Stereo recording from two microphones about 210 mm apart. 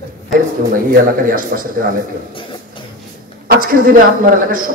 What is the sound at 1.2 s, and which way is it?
Speech, 40° right (ahead or behind).